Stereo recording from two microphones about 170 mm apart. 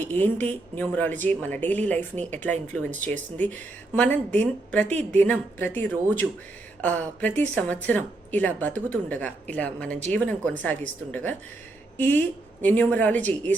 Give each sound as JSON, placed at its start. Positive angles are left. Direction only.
{"t": 0.0, "sound": "speech", "side_deg": 10}